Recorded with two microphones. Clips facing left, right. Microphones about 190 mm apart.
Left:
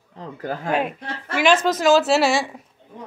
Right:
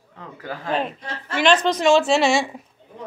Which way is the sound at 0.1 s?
40° left (ahead or behind).